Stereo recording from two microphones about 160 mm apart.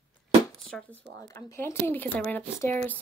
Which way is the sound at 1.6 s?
15° left (ahead or behind).